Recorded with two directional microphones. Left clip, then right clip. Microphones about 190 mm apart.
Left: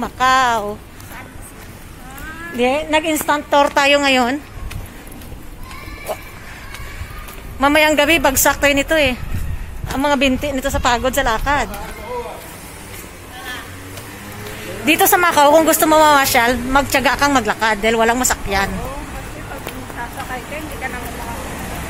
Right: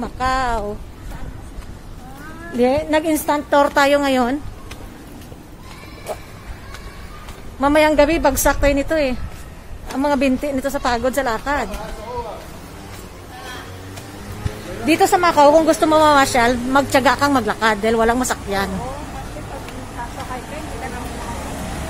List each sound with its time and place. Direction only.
0.0 s a woman's voice: 5° left (ahead or behind)
2.5 s a woman's voice: 25° right (ahead or behind); by 4.4 s 10° right (ahead or behind)
7.6 s a woman's voice: 5° right (ahead or behind)
14.9 s a woman's voice: centre (ahead or behind)